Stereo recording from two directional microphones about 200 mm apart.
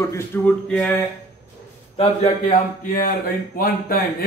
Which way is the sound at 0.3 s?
10° left (ahead or behind).